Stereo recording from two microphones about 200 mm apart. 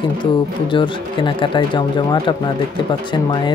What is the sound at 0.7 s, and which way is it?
Speech, 25° left (ahead or behind).